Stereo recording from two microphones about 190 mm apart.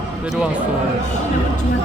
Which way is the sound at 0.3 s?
5° right (ahead or behind).